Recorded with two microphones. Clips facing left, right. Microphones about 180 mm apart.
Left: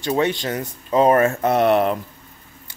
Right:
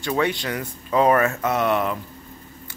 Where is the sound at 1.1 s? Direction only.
30° left (ahead or behind).